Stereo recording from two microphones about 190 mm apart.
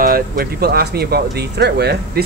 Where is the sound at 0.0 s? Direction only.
50° right (ahead or behind).